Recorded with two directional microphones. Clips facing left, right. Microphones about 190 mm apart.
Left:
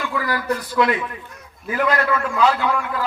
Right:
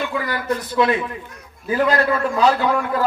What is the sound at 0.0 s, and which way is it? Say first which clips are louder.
A man's voice: even; 20° right (ahead or behind).